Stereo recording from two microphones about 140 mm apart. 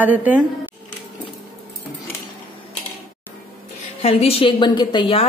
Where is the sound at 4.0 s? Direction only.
45° left (ahead or behind).